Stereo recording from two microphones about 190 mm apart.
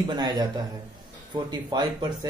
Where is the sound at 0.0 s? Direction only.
20° right (ahead or behind).